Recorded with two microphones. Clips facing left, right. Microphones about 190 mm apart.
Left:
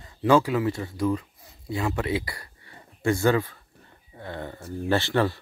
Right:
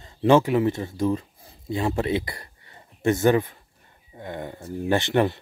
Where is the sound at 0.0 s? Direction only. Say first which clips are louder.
Right 2 dB; 25° right (ahead or behind).